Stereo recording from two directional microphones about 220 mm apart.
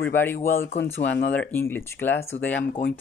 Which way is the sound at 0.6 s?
55° left (ahead or behind).